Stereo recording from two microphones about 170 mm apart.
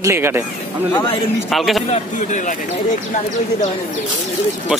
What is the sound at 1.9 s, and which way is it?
Speech, 45° left (ahead or behind).